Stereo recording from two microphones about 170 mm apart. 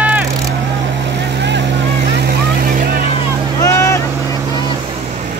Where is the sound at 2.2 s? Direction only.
65° right (ahead or behind).